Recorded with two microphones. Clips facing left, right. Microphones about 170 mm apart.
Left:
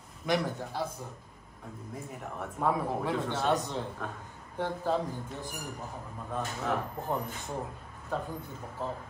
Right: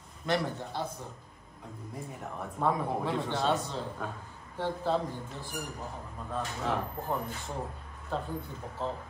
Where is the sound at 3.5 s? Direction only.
15° left (ahead or behind).